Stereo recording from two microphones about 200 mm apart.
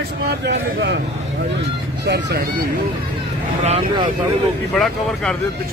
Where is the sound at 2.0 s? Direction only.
55° right (ahead or behind).